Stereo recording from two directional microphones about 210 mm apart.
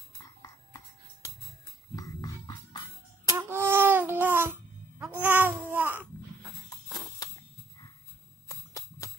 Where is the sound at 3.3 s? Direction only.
10° right (ahead or behind).